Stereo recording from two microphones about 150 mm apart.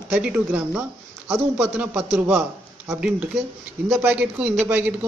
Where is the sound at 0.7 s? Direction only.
20° right (ahead or behind).